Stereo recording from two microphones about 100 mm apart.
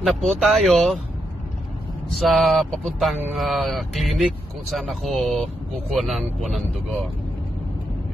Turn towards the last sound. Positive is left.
turn(degrees=0)  # may be behind; listen again after turning